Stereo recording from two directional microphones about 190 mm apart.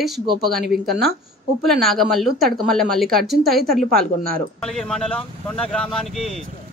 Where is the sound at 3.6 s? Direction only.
50° right (ahead or behind).